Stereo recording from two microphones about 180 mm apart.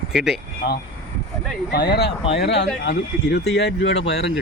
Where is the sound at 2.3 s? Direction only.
75° left (ahead or behind).